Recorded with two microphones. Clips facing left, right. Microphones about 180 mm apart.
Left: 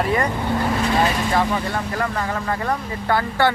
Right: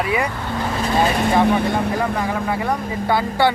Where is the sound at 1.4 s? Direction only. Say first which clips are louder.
Right 6 dB; 65° right (ahead or behind).